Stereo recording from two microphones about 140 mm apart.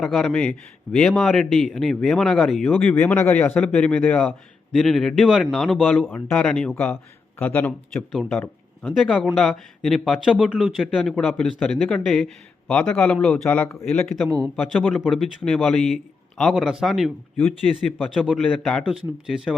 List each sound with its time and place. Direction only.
0.0 s a man's voice: 5° left (ahead or behind)
7.9 s speech: centre (ahead or behind)
14.3 s a man's voice: 25° right (ahead or behind)
14.5 s speech: centre (ahead or behind)
18.9 s speech: 5° right (ahead or behind)